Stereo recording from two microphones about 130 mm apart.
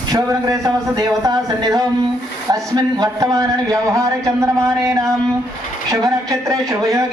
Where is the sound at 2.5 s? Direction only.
30° right (ahead or behind).